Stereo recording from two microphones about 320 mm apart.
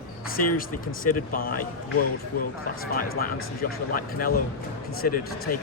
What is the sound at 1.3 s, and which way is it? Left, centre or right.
Speech, left.